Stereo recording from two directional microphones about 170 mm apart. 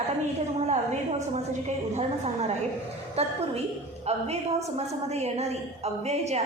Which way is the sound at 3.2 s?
35° right (ahead or behind).